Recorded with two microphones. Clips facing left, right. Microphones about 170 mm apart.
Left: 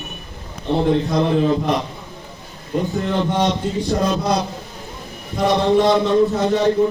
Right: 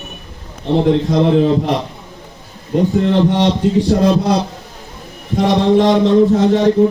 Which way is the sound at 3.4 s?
30° right (ahead or behind).